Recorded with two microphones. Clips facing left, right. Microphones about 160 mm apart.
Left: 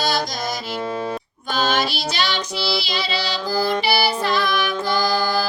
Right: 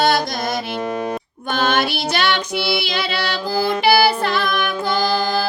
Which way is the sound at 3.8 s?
60° right (ahead or behind).